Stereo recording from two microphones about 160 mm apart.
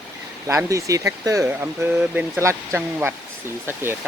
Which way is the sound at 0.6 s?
20° right (ahead or behind).